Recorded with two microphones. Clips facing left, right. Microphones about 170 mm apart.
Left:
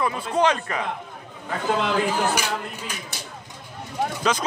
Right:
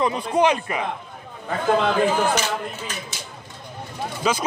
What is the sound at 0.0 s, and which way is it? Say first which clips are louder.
Speech: right 2 dB; 15° right (ahead or behind).